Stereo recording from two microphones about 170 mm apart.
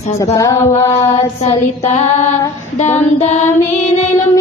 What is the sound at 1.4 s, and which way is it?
Mantra, 40° left (ahead or behind).